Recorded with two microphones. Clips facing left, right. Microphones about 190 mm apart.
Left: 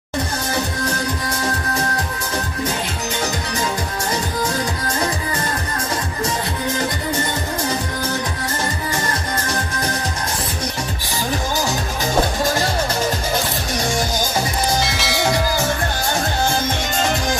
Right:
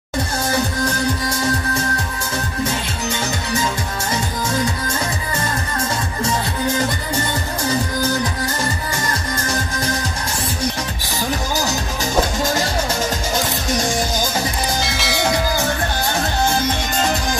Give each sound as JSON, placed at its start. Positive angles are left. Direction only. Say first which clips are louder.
{"t": 14.8, "sound": "train", "louder": "left 1 dB", "side_deg": 0}